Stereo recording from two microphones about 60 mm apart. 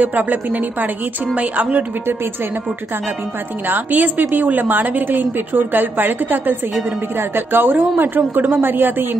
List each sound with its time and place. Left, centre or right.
0.0 s speech: right
3.6 s a woman's voice: right